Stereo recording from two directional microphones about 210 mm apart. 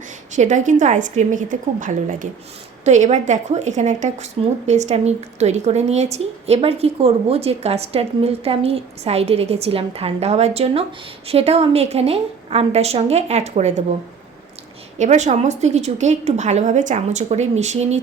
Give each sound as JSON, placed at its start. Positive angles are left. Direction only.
{"t": 0.3, "sound": "a woman's voice", "side_deg": -35}
{"t": 14.9, "sound": "a woman's voice", "side_deg": -35}